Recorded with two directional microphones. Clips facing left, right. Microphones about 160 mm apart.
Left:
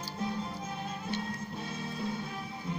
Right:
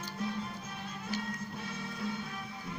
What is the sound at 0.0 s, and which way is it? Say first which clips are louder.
Music: left 2 dB; 25° left (ahead or behind).